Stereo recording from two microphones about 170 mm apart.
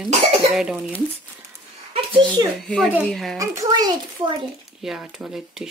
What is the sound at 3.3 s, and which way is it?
Speech, 20° right (ahead or behind).